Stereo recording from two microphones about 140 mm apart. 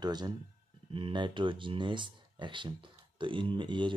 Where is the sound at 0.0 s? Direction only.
30° right (ahead or behind).